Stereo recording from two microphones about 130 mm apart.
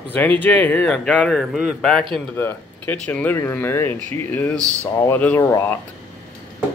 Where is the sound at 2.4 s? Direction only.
15° left (ahead or behind).